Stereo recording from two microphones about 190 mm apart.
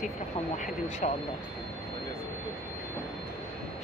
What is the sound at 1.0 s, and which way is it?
Speech, 40° left (ahead or behind).